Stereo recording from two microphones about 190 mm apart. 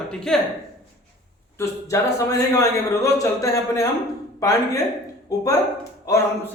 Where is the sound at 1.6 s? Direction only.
15° left (ahead or behind).